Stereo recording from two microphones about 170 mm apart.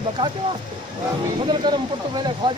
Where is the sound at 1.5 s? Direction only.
25° right (ahead or behind).